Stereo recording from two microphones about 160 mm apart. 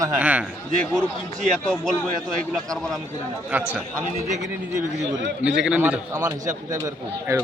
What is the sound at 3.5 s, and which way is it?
Speech, 10° right (ahead or behind).